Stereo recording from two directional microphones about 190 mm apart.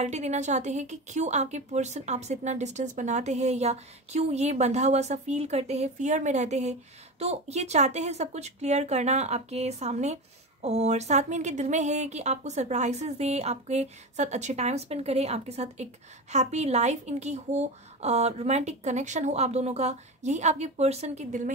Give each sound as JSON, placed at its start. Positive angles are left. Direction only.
{"t": 0.0, "sound": "speech", "side_deg": -35}